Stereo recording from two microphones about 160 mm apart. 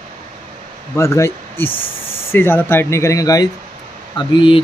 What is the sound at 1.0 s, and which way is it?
Speech, 15° left (ahead or behind).